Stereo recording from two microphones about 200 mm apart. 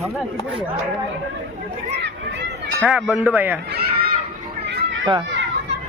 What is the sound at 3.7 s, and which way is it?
Children playing, 50° right (ahead or behind).